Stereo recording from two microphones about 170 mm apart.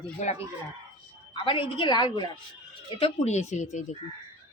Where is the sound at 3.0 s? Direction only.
40° left (ahead or behind).